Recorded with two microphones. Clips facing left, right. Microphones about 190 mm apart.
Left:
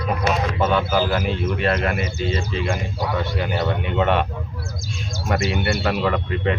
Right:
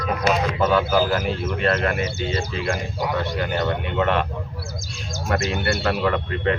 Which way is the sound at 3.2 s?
5° left (ahead or behind).